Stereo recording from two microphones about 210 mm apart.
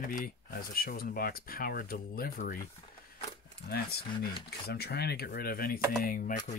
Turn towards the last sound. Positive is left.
turn(degrees=40)  # may be behind; listen again after turning